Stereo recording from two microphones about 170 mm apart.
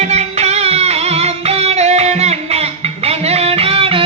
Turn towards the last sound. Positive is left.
turn(degrees=-35)  # may be behind; listen again after turning